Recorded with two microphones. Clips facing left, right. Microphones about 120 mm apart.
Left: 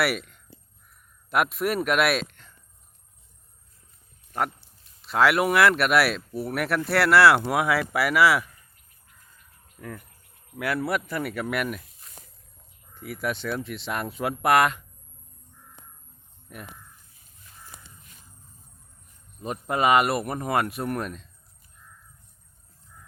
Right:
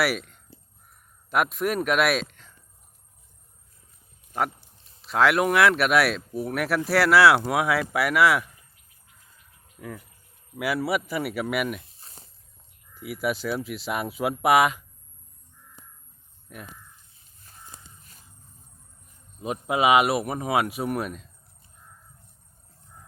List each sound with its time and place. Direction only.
0.0 s speech: centre (ahead or behind)
5.0 s speech: centre (ahead or behind)
9.7 s speech: 5° right (ahead or behind)
11.9 s a sound: 30° right (ahead or behind)
13.0 s speech: 5° right (ahead or behind)
16.5 s speech: centre (ahead or behind)
19.4 s speech: 5° right (ahead or behind)